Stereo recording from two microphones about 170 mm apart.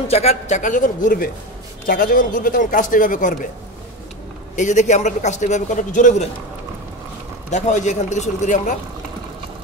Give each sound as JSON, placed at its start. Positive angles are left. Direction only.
{"t": 0.1, "sound": "a man's voice", "side_deg": 40}
{"t": 4.6, "sound": "a man's voice", "side_deg": 45}
{"t": 7.5, "sound": "a man's voice", "side_deg": 45}